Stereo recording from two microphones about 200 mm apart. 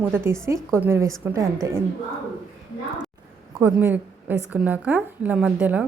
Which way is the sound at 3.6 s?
10° right (ahead or behind).